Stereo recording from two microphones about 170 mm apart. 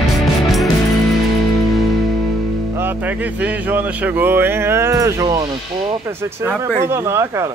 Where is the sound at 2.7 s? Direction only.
10° right (ahead or behind).